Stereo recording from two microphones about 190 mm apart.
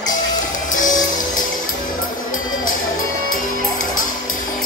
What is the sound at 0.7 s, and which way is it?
Music, 45° left (ahead or behind).